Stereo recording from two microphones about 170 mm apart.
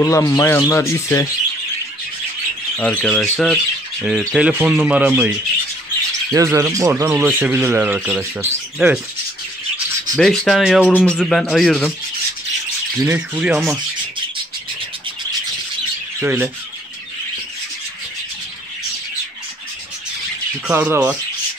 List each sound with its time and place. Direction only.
0.0 s speech: 20° left (ahead or behind)
2.8 s speech: 10° left (ahead or behind)
3.2 s rub: centre (ahead or behind)
4.4 s speech: 10° right (ahead or behind)
6.3 s speech: 20° right (ahead or behind)
10.1 s rub: 5° left (ahead or behind)
13.0 s rub: 10° right (ahead or behind)
16.2 s speech: 15° right (ahead or behind)
20.6 s speech: 15° right (ahead or behind)